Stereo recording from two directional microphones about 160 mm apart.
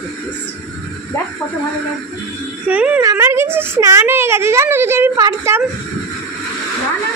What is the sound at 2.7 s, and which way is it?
Speech, 10° right (ahead or behind).